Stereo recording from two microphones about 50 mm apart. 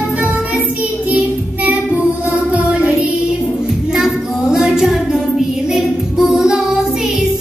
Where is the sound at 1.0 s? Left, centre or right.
Right.